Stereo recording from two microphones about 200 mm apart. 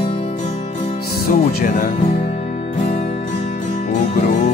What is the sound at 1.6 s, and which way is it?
Speech, 40° left (ahead or behind).